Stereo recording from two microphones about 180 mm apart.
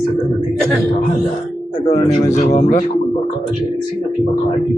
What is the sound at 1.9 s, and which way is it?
Speech, 25° left (ahead or behind).